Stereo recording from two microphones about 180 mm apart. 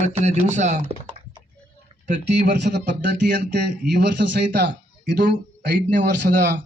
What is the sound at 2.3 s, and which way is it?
Speech, 70° right (ahead or behind).